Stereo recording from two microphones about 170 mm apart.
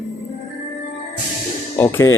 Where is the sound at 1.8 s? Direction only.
15° left (ahead or behind).